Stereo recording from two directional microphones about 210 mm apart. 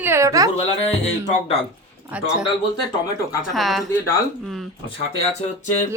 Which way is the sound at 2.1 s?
5° right (ahead or behind).